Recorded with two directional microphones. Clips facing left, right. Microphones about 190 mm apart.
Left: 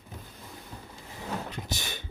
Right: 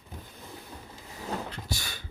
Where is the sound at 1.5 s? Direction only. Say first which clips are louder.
Left 1 dB; 20° left (ahead or behind).